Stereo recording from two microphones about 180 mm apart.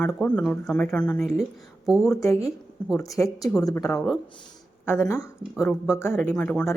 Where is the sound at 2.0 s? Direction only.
15° left (ahead or behind).